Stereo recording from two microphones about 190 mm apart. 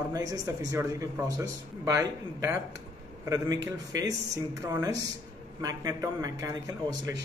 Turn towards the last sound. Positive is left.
turn(degrees=-20)  # may be behind; listen again after turning